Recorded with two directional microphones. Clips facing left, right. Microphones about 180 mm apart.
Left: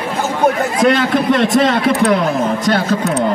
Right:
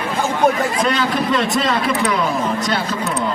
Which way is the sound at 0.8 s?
50° left (ahead or behind).